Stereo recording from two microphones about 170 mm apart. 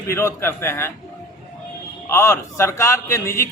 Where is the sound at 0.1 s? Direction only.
15° left (ahead or behind).